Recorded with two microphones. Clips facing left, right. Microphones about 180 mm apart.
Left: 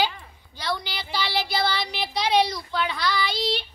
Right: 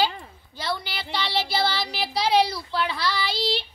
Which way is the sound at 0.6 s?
Centre (ahead or behind).